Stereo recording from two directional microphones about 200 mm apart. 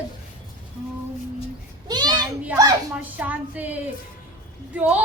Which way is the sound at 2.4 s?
15° right (ahead or behind).